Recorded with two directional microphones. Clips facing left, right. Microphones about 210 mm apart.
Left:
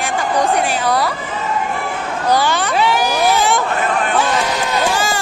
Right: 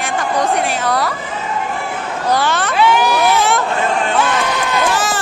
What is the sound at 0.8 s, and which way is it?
Speech, centre (ahead or behind).